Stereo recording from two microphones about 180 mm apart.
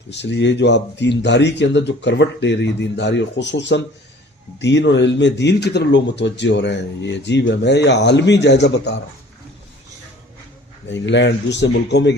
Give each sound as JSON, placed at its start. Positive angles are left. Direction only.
{"t": 0.1, "sound": "speech", "side_deg": 75}
{"t": 10.8, "sound": "speech", "side_deg": 85}